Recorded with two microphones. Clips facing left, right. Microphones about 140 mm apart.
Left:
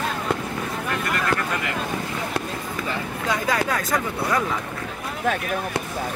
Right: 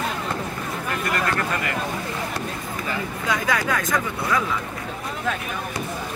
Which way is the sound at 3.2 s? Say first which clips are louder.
Even; 30° left (ahead or behind).